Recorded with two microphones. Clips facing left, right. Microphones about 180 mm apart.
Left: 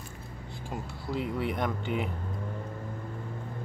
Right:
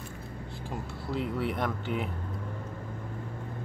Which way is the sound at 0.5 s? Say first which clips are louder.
Left 1 dB; centre (ahead or behind).